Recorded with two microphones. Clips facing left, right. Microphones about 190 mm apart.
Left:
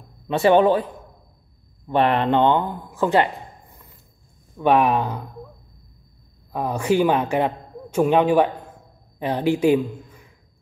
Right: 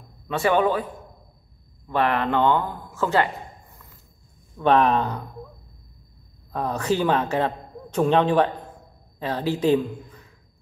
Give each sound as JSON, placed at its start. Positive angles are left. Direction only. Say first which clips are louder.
{"t": 0.3, "sound": "a man's voice", "louder": "left 5 dB", "side_deg": 25}
{"t": 1.9, "sound": "a man's voice", "louder": "left 4 dB", "side_deg": 20}
{"t": 6.5, "sound": "a man's voice", "louder": "left 3 dB", "side_deg": 10}